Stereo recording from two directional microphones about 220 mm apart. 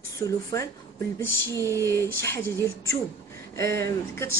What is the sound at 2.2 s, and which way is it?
A woman's voice, 10° left (ahead or behind).